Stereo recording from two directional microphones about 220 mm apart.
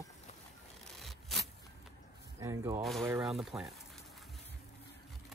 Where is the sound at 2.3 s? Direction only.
15° right (ahead or behind).